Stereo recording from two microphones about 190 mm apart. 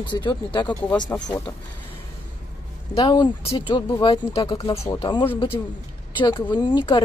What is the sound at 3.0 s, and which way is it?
Speech, 25° left (ahead or behind).